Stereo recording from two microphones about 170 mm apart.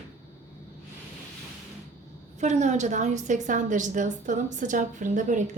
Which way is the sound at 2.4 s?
45° right (ahead or behind).